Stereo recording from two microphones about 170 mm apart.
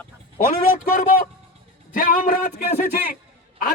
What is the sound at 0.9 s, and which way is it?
Music, 50° left (ahead or behind).